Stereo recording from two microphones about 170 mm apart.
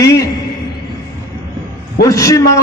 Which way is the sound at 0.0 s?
20° left (ahead or behind).